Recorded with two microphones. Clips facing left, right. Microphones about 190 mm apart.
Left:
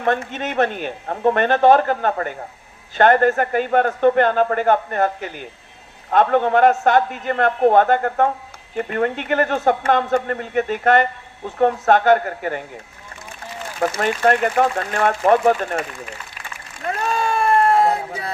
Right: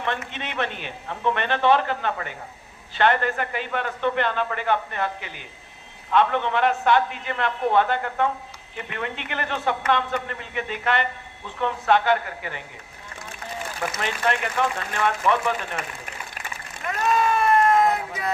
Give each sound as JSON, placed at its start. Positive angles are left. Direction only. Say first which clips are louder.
{"t": 0.3, "sound": "a man's voice", "louder": "left 8 dB", "side_deg": 45}
{"t": 14.0, "sound": "a man's voice", "louder": "left 8 dB", "side_deg": 45}
{"t": 16.8, "sound": "a sound", "louder": "even", "side_deg": 35}